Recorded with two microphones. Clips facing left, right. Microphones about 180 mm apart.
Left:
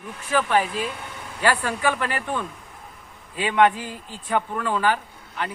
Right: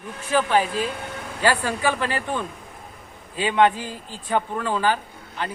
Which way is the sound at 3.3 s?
30° right (ahead or behind).